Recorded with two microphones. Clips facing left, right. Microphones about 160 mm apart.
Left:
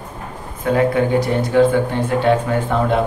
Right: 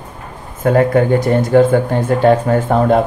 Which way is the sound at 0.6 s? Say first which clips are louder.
Right 4 dB; 45° right (ahead or behind).